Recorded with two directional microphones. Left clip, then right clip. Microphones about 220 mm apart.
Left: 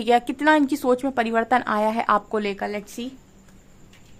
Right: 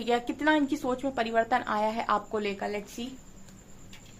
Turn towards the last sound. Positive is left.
turn(degrees=45)  # may be behind; listen again after turning